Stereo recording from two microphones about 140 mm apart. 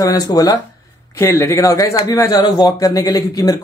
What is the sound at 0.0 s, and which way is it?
Speech, 25° left (ahead or behind).